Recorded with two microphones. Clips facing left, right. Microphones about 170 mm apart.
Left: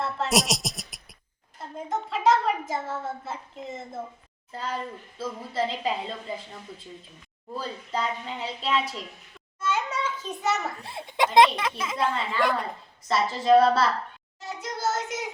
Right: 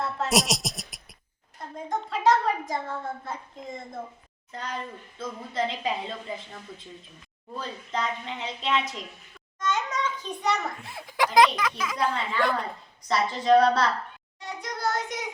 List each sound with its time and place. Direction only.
0.0 s a sound: centre (ahead or behind)
1.9 s a child's voice: centre (ahead or behind)
9.6 s a sound: 10° left (ahead or behind)
10.4 s a woman's voice: 5° left (ahead or behind)
10.8 s speech: 30° left (ahead or behind)
12.1 s a woman's voice: 5° left (ahead or behind)